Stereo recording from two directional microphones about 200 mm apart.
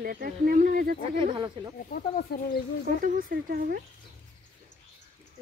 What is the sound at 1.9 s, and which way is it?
Speech, 50° left (ahead or behind).